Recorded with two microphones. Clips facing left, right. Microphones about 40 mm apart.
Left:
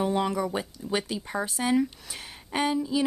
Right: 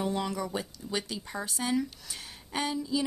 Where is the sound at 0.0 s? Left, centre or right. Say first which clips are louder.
Left 5 dB; left.